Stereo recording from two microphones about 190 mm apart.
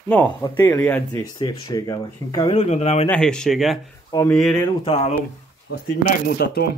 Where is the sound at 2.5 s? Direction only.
35° left (ahead or behind).